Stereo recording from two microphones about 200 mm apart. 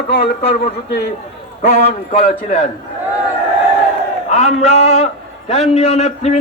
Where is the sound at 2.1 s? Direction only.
30° left (ahead or behind).